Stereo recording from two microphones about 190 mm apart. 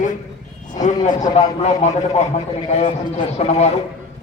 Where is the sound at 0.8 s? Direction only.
40° left (ahead or behind).